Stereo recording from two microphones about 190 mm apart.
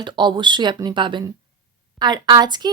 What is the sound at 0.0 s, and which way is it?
Speech, 25° right (ahead or behind).